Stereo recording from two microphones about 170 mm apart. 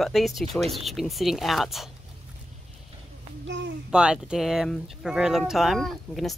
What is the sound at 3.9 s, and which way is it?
Speech, 5° right (ahead or behind).